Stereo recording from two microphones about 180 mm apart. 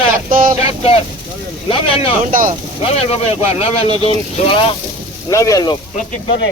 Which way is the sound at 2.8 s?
35° left (ahead or behind).